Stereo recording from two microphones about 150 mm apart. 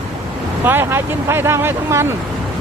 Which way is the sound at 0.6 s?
15° right (ahead or behind).